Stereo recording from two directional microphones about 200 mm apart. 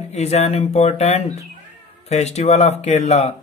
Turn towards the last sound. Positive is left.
turn(degrees=35)  # may be behind; listen again after turning